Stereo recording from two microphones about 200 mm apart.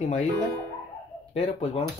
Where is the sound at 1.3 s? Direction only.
30° left (ahead or behind).